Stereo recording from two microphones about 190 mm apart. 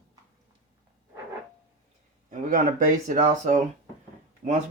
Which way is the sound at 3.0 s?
45° right (ahead or behind).